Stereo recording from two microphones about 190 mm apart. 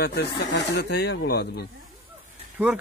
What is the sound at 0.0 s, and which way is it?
Speech, 60° left (ahead or behind).